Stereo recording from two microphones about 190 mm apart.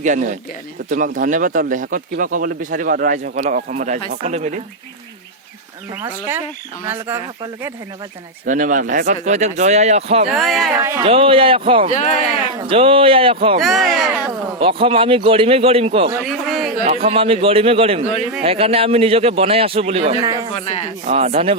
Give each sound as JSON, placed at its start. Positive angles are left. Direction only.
{"t": 0.0, "sound": "a man's voice", "side_deg": -40}
{"t": 6.0, "sound": "speech", "side_deg": -10}
{"t": 8.4, "sound": "a man's voice", "side_deg": -40}
{"t": 10.3, "sound": "speech", "side_deg": 0}
{"t": 10.8, "sound": "speech", "side_deg": -15}
{"t": 11.0, "sound": "a man's voice", "side_deg": -30}
{"t": 13.6, "sound": "speech", "side_deg": 0}
{"t": 14.6, "sound": "a man's voice", "side_deg": -30}
{"t": 16.2, "sound": "a man's voice", "side_deg": 0}
{"t": 16.8, "sound": "a man's voice", "side_deg": -30}
{"t": 20.2, "sound": "a man's voice", "side_deg": -20}
{"t": 21.1, "sound": "a man's voice", "side_deg": -35}